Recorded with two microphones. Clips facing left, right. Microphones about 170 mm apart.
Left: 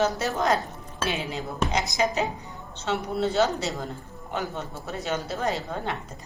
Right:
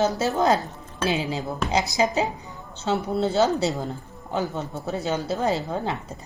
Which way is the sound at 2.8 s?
35° right (ahead or behind).